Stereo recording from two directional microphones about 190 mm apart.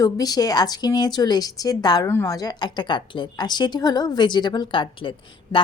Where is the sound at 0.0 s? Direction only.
20° left (ahead or behind).